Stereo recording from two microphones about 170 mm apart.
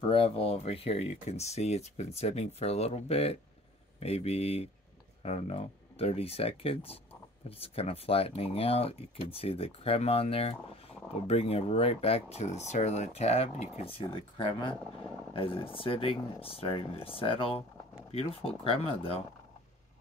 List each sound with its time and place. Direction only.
0.0 s speech: 35° left (ahead or behind)
14.8 s speech: 5° left (ahead or behind)
15.3 s speech: 30° left (ahead or behind)